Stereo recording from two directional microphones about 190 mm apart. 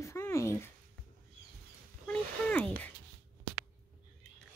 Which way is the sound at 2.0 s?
10° left (ahead or behind).